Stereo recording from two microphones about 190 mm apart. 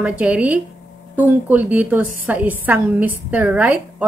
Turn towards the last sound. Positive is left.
turn(degrees=-5)  # may be behind; listen again after turning